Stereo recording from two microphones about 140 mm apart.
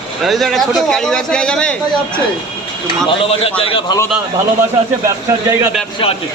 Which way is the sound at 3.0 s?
40° left (ahead or behind).